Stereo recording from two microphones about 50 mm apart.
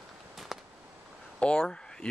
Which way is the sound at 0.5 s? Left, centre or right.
Centre.